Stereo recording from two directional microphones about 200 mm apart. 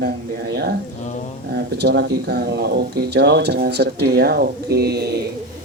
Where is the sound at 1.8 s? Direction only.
55° right (ahead or behind).